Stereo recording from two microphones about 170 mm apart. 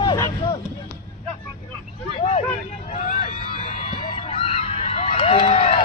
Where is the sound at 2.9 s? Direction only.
45° left (ahead or behind).